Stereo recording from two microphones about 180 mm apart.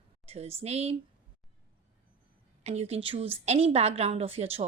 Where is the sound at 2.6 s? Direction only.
35° right (ahead or behind).